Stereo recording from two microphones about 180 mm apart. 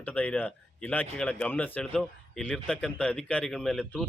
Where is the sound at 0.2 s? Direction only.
10° left (ahead or behind).